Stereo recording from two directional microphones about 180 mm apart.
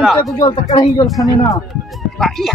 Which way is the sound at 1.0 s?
Centre (ahead or behind).